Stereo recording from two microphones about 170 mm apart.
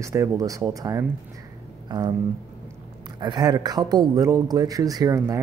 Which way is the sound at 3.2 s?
25° right (ahead or behind).